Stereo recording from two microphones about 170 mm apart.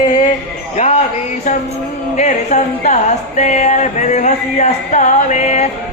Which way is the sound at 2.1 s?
45° left (ahead or behind).